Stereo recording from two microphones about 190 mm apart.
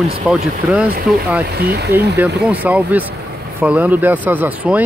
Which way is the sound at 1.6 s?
55° right (ahead or behind).